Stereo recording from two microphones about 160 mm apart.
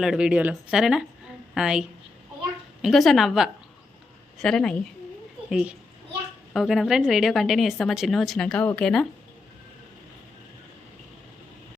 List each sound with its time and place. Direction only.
0.0 s a woman's voice: 5° right (ahead or behind)
2.8 s a woman's voice: centre (ahead or behind)